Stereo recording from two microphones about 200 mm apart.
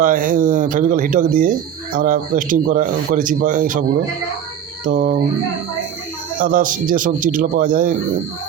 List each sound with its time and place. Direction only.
0.0 s speech: 40° right (ahead or behind)
4.9 s speech: 40° right (ahead or behind)
6.4 s speech: 40° right (ahead or behind)